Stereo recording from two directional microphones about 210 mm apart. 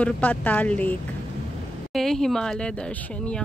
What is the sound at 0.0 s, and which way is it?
Speech, 5° left (ahead or behind).